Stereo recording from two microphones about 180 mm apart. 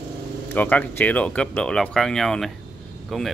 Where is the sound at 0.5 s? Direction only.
10° left (ahead or behind).